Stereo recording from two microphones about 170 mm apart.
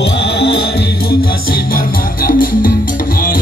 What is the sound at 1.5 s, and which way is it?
Music, 55° left (ahead or behind).